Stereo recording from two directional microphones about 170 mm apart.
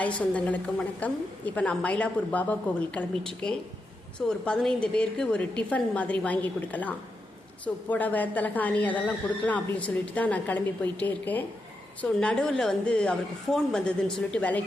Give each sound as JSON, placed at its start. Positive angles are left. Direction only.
{"t": 0.0, "sound": "a woman's voice", "side_deg": 10}